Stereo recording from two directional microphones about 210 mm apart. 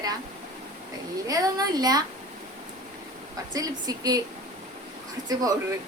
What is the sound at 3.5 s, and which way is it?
Speech, 20° right (ahead or behind).